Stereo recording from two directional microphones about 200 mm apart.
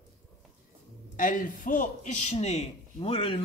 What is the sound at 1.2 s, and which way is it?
A man's voice, 40° left (ahead or behind).